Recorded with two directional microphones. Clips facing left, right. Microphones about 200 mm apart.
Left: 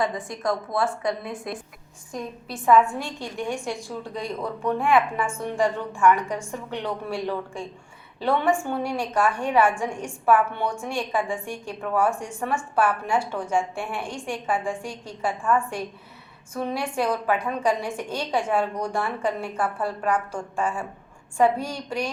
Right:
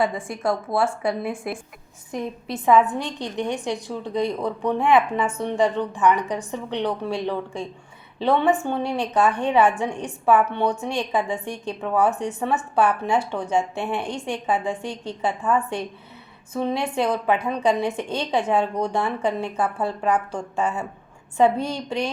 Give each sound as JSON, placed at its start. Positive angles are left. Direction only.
{"t": 0.0, "sound": "a woman's voice", "side_deg": -25}
{"t": 2.8, "sound": "a woman's voice", "side_deg": -20}